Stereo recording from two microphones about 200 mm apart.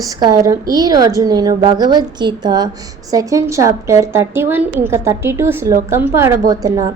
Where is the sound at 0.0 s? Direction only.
15° right (ahead or behind).